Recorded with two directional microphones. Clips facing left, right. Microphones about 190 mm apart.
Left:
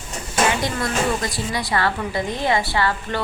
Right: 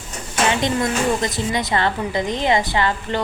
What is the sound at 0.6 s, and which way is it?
A woman's voice, 20° right (ahead or behind).